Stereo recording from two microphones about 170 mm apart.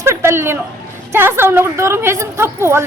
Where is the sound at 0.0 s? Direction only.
15° right (ahead or behind).